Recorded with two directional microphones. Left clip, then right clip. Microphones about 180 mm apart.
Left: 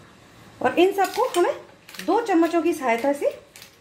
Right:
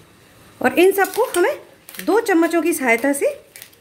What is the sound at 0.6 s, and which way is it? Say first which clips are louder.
Speech: right 4 dB; 50° right (ahead or behind).